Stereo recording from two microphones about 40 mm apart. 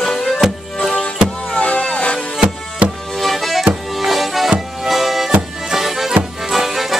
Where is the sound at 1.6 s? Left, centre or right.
Left.